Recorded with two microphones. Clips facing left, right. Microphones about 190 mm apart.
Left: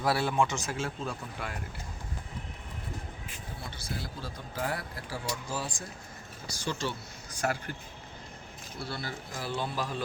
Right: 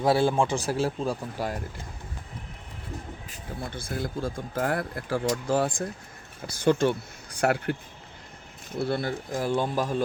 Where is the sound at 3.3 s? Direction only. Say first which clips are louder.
Right 10 dB; 50° right (ahead or behind).